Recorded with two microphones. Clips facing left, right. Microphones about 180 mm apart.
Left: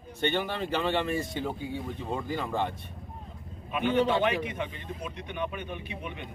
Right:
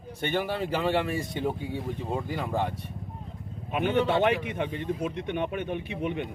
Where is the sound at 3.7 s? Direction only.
50° right (ahead or behind).